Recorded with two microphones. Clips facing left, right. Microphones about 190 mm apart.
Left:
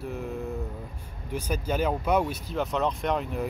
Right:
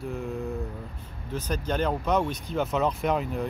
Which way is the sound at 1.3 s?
10° left (ahead or behind).